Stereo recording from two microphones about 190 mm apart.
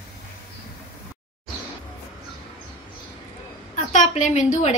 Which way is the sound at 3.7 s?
40° left (ahead or behind).